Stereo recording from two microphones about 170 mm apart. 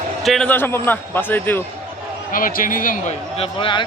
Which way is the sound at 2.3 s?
55° left (ahead or behind).